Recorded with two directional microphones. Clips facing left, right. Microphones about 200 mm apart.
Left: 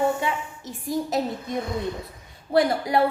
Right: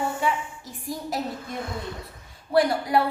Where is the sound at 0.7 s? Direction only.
20° left (ahead or behind).